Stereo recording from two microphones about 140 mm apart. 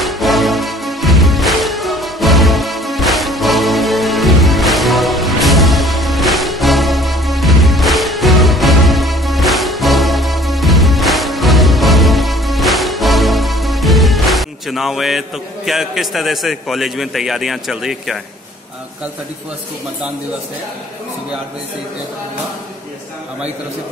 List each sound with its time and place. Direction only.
0.0 s music: centre (ahead or behind)